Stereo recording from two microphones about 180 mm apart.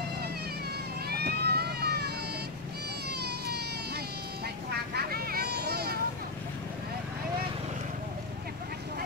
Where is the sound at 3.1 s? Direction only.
65° right (ahead or behind).